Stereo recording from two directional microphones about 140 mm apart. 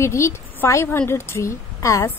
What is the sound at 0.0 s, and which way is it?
A woman's voice, 20° left (ahead or behind).